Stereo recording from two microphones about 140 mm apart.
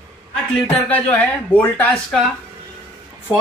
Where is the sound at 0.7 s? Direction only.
10° left (ahead or behind).